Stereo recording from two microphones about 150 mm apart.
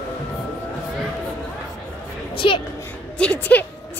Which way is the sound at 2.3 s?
35° left (ahead or behind).